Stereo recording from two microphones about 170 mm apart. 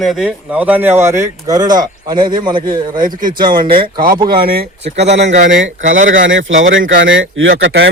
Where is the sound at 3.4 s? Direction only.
25° right (ahead or behind).